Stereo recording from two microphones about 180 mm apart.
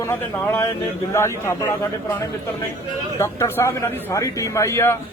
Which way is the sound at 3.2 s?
15° left (ahead or behind).